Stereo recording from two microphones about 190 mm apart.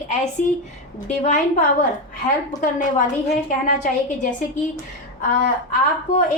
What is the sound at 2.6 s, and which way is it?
A woman's voice, 40° left (ahead or behind).